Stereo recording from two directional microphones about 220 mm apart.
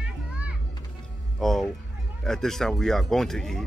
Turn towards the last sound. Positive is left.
turn(degrees=0)  # may be behind; listen again after turning